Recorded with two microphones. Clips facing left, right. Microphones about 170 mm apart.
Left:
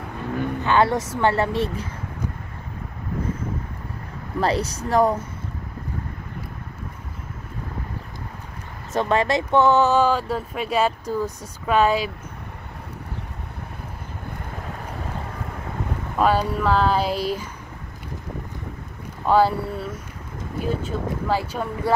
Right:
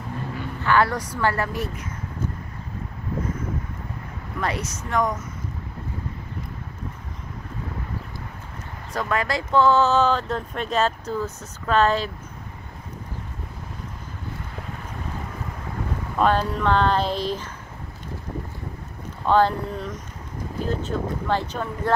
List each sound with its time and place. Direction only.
0.6 s speech: 20° left (ahead or behind)
4.4 s speech: 30° left (ahead or behind)
8.9 s speech: 25° left (ahead or behind)
16.2 s speech: 5° left (ahead or behind)
19.2 s speech: 10° left (ahead or behind)